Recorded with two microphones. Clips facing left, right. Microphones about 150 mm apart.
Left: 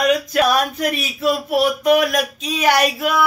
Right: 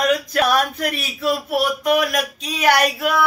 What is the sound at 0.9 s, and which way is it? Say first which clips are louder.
Speech: left 2 dB; 20° left (ahead or behind).